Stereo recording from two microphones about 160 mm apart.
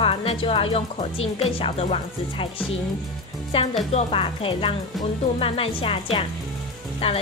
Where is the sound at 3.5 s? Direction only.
35° left (ahead or behind).